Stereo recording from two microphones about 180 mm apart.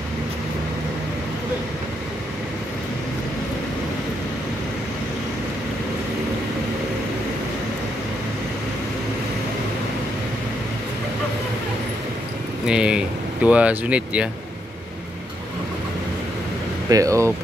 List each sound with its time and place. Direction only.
12.6 s speech: 5° right (ahead or behind)
16.9 s speech: 15° right (ahead or behind)